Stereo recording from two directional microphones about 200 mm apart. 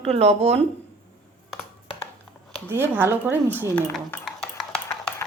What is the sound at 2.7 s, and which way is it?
Speech, 10° right (ahead or behind).